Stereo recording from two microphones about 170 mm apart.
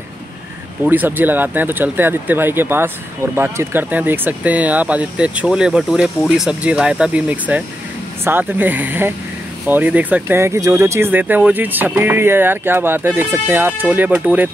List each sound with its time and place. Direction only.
0.8 s speech: 10° right (ahead or behind)